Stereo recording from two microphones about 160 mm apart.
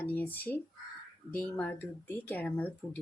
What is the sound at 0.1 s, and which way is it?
Speech, 10° left (ahead or behind).